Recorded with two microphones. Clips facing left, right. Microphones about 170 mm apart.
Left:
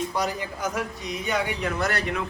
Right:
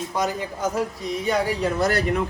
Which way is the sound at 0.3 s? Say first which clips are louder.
Right 3 dB; 30° right (ahead or behind).